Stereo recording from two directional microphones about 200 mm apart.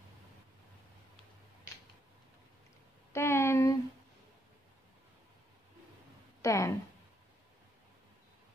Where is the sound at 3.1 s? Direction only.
15° left (ahead or behind).